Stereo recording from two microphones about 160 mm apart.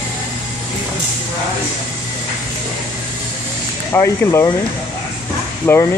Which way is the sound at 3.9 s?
15° left (ahead or behind).